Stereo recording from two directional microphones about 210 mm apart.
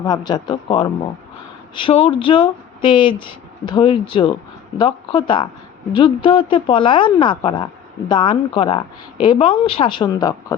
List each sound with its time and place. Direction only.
0.0 s speech: 20° left (ahead or behind)